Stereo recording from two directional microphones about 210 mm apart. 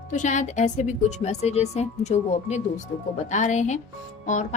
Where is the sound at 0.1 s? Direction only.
35° left (ahead or behind).